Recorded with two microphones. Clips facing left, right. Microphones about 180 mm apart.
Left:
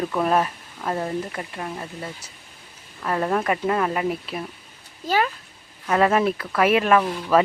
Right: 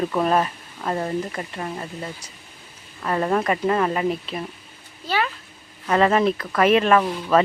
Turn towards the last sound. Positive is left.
turn(degrees=10)  # may be behind; listen again after turning